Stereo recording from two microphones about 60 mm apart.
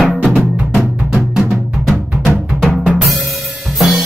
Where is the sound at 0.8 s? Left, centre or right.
Centre.